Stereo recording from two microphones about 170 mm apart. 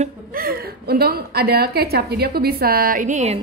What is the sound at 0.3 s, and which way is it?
A woman's voice, 60° right (ahead or behind).